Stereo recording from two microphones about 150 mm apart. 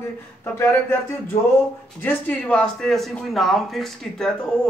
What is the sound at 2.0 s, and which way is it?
Speech, 10° left (ahead or behind).